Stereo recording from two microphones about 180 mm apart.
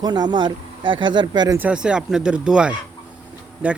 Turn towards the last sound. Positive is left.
turn(degrees=-10)  # may be behind; listen again after turning